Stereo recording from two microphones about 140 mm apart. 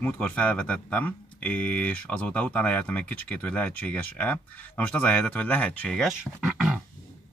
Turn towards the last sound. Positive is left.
turn(degrees=-5)  # may be behind; listen again after turning